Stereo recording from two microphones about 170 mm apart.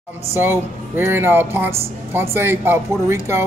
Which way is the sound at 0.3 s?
15° right (ahead or behind).